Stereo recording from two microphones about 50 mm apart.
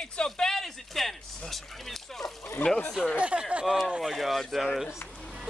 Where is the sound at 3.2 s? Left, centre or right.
Right.